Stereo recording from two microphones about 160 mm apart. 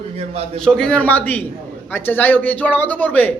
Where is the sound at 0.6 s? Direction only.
5° left (ahead or behind).